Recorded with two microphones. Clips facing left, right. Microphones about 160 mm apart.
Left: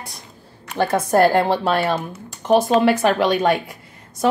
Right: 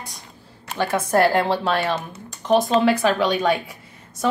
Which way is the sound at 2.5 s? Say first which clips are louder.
Left 2 dB; 5° left (ahead or behind).